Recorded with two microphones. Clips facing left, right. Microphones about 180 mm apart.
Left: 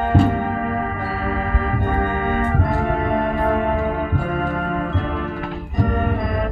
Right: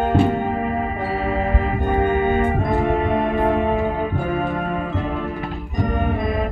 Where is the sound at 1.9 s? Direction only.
15° right (ahead or behind).